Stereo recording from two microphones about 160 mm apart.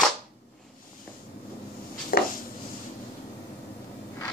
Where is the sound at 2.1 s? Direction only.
70° left (ahead or behind).